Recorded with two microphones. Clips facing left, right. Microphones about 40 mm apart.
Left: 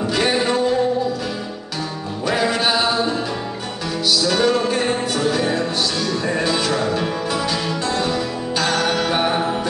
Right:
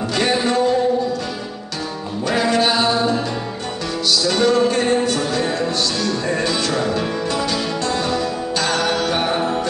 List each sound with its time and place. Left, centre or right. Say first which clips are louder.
0.1 s music: right 1 dB; centre
2.2 s music: right 2 dB; centre